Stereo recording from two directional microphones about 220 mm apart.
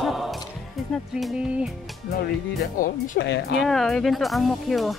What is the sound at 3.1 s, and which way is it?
Speech, 50° left (ahead or behind).